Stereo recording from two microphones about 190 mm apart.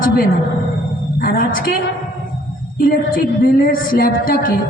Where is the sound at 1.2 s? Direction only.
50° left (ahead or behind).